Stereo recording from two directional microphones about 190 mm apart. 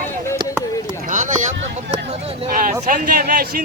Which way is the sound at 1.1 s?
40° right (ahead or behind).